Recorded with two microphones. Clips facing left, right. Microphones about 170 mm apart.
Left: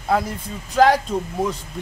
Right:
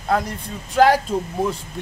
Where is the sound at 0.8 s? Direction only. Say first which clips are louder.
Even; 5° right (ahead or behind).